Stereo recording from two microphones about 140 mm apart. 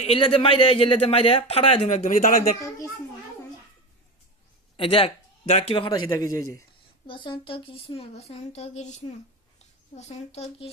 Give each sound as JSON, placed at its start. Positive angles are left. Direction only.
{"t": 0.0, "sound": "speech", "side_deg": 45}
{"t": 2.0, "sound": "a man's voice", "side_deg": 65}
{"t": 4.8, "sound": "speech", "side_deg": 40}
{"t": 6.1, "sound": "a man's voice", "side_deg": 25}
{"t": 7.1, "sound": "speech", "side_deg": 35}